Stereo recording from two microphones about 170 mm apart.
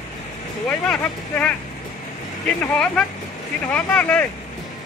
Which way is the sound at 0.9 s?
5° left (ahead or behind).